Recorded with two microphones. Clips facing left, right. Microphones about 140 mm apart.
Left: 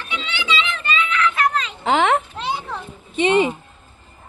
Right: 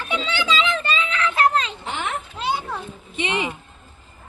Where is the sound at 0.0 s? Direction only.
40° right (ahead or behind).